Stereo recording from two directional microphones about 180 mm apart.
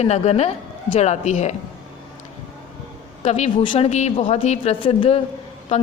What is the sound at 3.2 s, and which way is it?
A woman's voice, 35° left (ahead or behind).